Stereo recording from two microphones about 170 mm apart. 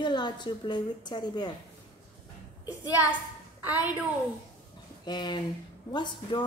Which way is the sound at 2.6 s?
20° left (ahead or behind).